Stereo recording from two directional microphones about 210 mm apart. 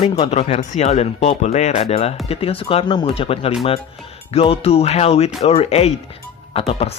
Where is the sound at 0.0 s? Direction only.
30° left (ahead or behind).